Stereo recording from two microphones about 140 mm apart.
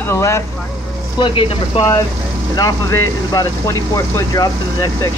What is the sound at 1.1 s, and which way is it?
Speech, 35° left (ahead or behind).